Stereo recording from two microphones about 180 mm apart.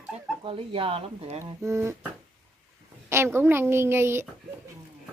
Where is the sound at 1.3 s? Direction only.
15° right (ahead or behind).